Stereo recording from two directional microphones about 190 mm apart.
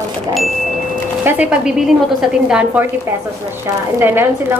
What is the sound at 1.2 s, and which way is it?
A woman's voice, 5° right (ahead or behind).